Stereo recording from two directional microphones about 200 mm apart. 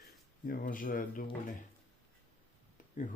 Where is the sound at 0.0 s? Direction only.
45° left (ahead or behind).